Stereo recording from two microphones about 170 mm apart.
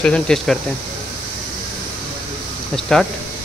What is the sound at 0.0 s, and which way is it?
Speech, 5° left (ahead or behind).